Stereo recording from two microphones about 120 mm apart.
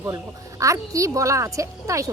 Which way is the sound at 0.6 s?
25° right (ahead or behind).